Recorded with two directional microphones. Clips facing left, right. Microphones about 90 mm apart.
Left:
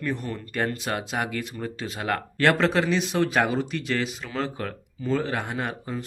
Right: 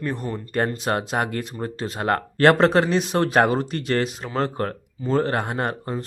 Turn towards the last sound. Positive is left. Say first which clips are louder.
# right 5 dB
turn(degrees=-50)  # may be behind; listen again after turning